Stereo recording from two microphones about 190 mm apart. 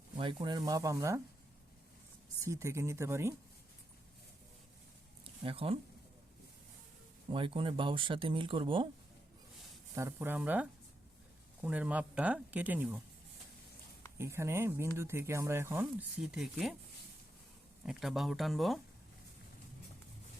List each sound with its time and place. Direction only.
0.2 s speech: 25° right (ahead or behind)
2.4 s speech: 15° right (ahead or behind)
5.2 s a sound: 30° right (ahead or behind)
7.3 s speech: 25° right (ahead or behind)
9.9 s speech: 15° right (ahead or behind)
14.2 s speech: 15° right (ahead or behind)
17.8 s speech: centre (ahead or behind)